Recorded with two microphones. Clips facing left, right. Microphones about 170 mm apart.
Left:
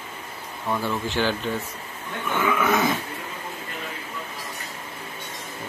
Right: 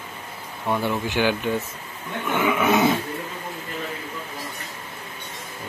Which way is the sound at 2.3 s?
20° right (ahead or behind).